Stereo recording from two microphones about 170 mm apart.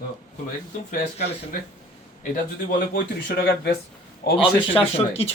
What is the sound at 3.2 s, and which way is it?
Speech, 70° left (ahead or behind).